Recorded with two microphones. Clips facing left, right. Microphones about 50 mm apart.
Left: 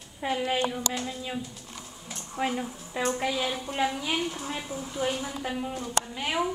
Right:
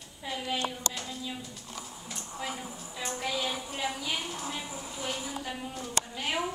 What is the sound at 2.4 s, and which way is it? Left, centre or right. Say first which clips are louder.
Speech: left 9 dB; left.